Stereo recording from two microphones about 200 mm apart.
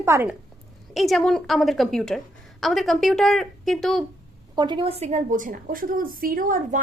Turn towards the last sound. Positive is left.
turn(degrees=-45)  # may be behind; listen again after turning